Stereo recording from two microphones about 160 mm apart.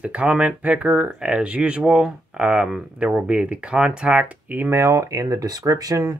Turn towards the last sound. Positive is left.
turn(degrees=-20)  # may be behind; listen again after turning